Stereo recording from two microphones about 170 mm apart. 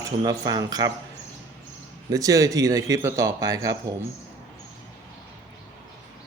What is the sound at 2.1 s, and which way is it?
Speech, 20° right (ahead or behind).